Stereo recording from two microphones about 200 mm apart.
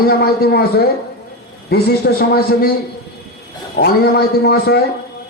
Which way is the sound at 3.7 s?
55° left (ahead or behind).